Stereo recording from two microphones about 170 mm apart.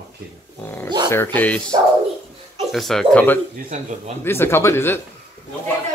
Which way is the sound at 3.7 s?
45° right (ahead or behind).